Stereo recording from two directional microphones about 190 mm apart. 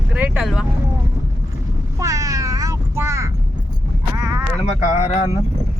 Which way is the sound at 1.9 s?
15° right (ahead or behind).